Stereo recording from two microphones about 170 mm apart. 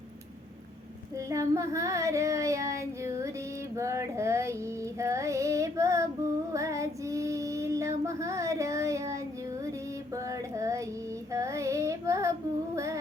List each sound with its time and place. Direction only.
1.1 s child singing: 20° right (ahead or behind)
3.8 s female singing: 15° right (ahead or behind)
6.5 s child singing: 20° right (ahead or behind)
10.1 s a sound: 20° right (ahead or behind)
11.3 s child singing: 15° right (ahead or behind)
12.7 s music: 15° right (ahead or behind)